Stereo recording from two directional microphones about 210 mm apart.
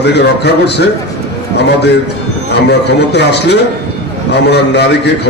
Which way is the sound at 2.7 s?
55° left (ahead or behind).